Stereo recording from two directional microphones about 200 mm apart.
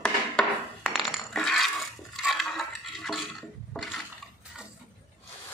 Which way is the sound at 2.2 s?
Centre (ahead or behind).